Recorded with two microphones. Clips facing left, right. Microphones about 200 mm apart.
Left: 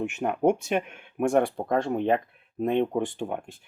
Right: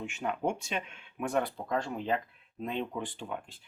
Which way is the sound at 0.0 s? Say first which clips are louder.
Left 9 dB; 55° left (ahead or behind).